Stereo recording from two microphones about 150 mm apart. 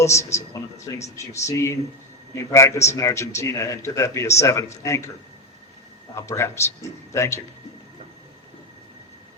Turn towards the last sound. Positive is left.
turn(degrees=20)  # may be behind; listen again after turning